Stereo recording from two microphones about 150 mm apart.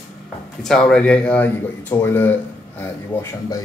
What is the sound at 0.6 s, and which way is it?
Speech, 5° left (ahead or behind).